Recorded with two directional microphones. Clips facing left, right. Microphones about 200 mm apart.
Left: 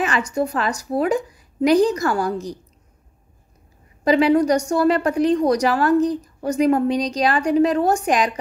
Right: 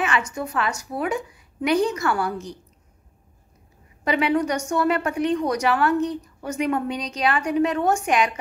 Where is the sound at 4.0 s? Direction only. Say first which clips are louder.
Left 6 dB; 35° left (ahead or behind).